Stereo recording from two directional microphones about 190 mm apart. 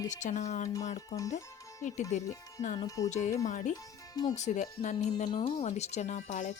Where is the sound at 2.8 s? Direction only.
15° left (ahead or behind).